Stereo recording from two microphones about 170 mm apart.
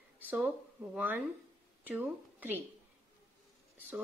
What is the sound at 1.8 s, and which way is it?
Speech, 10° right (ahead or behind).